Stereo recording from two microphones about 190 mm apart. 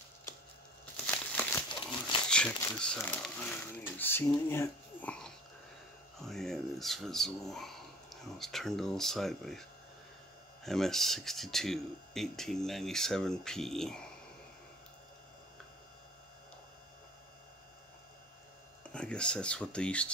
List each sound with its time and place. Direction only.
0.9 s crumpling: 5° left (ahead or behind)
1.7 s crumpling: 25° left (ahead or behind)
2.2 s crumpling: 5° left (ahead or behind)
2.8 s speech: 10° left (ahead or behind)
18.9 s speech: 5° left (ahead or behind)